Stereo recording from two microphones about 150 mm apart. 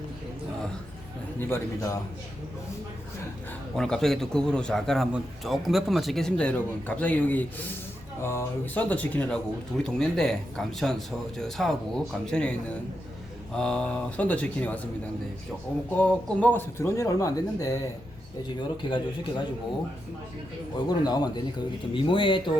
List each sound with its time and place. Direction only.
1.4 s speech: 15° left (ahead or behind)
3.8 s speech: 5° left (ahead or behind)
15.9 s speech: 10° left (ahead or behind)
18.8 s speech: 30° left (ahead or behind)
20.7 s speech: 25° left (ahead or behind)